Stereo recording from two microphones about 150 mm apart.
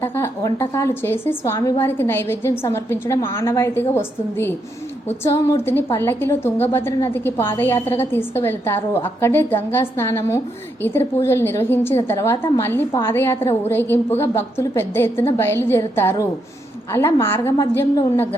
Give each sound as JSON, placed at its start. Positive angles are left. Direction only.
{"t": 0.0, "sound": "a woman's voice", "side_deg": 20}